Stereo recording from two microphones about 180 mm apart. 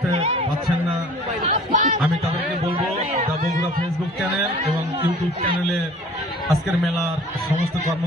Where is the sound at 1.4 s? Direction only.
45° right (ahead or behind).